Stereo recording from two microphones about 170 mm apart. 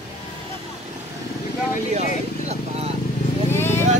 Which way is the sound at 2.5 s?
35° right (ahead or behind).